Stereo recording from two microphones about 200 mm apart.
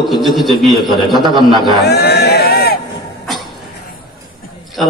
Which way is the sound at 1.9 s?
55° left (ahead or behind).